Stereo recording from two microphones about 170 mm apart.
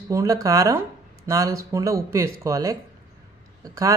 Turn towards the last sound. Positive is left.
turn(degrees=-20)  # may be behind; listen again after turning